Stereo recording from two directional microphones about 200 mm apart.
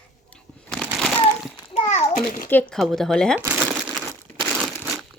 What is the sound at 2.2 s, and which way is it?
Speech, 45° left (ahead or behind).